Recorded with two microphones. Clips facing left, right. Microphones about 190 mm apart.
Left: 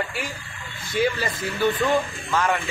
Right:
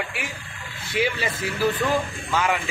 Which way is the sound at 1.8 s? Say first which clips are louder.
Left 2 dB; 5° right (ahead or behind).